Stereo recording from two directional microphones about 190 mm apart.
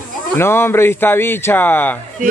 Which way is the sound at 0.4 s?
10° left (ahead or behind).